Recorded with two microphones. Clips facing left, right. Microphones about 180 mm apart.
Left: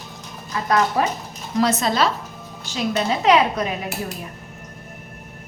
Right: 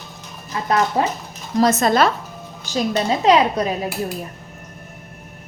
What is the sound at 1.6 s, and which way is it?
Speech, 45° right (ahead or behind).